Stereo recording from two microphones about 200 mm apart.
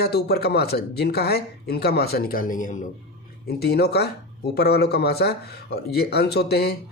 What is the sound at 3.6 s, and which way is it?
Speech, 55° left (ahead or behind).